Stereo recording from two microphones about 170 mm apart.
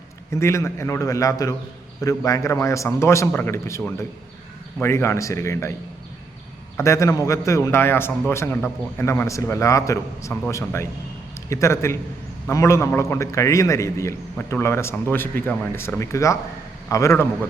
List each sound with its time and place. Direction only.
0.3 s a man's voice: 15° left (ahead or behind)
6.7 s a man's voice: 20° left (ahead or behind)